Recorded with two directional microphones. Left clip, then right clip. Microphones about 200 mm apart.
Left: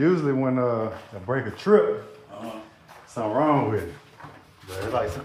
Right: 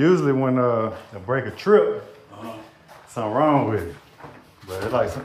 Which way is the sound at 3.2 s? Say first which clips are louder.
Right 1 dB; 20° right (ahead or behind).